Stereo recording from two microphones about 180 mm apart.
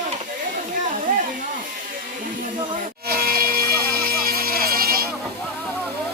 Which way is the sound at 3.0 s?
55° right (ahead or behind).